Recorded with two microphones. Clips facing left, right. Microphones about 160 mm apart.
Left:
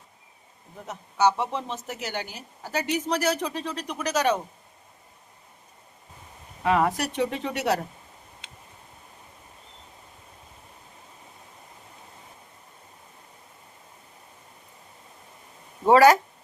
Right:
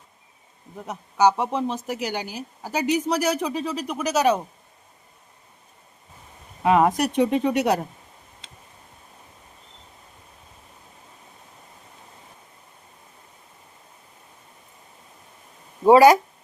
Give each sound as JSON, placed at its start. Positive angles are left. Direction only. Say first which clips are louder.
{"t": 0.9, "sound": "speech", "louder": "right 3 dB", "side_deg": -15}
{"t": 6.6, "sound": "speech", "louder": "right 5 dB", "side_deg": -20}
{"t": 15.9, "sound": "speech", "louder": "right 3 dB", "side_deg": -15}